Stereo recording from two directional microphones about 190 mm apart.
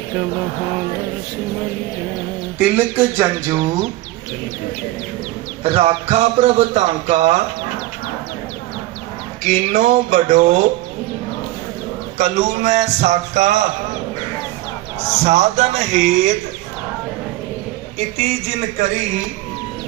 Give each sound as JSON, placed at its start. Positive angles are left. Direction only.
{"t": 2.6, "sound": "speech", "side_deg": -10}
{"t": 5.6, "sound": "speech", "side_deg": -35}
{"t": 9.5, "sound": "a sound", "side_deg": -45}
{"t": 12.1, "sound": "speech", "side_deg": -35}
{"t": 15.2, "sound": "speech", "side_deg": -35}